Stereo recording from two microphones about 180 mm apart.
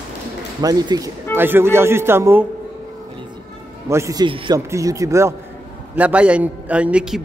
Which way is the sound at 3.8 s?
15° right (ahead or behind).